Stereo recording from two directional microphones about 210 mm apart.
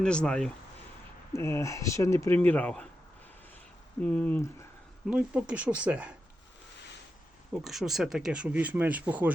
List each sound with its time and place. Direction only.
0.0 s speech: 5° left (ahead or behind)
4.0 s speech: 5° left (ahead or behind)
5.0 s speech: 5° right (ahead or behind)
7.6 s speech: centre (ahead or behind)